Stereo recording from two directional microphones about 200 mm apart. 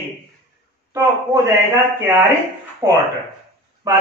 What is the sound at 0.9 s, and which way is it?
A man's voice, 15° right (ahead or behind).